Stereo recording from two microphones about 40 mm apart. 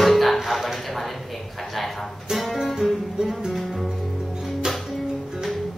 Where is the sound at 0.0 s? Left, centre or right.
Centre.